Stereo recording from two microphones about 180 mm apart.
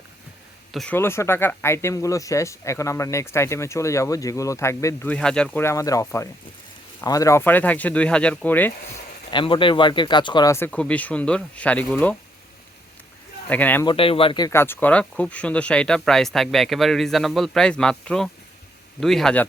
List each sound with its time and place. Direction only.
0.7 s speech: centre (ahead or behind)
0.9 s speech: 15° left (ahead or behind)
9.3 s speech: 25° left (ahead or behind); by 12.1 s 10° left (ahead or behind)
13.5 s speech: 10° left (ahead or behind)
13.8 s speech: 30° left (ahead or behind); by 19.5 s 5° left (ahead or behind)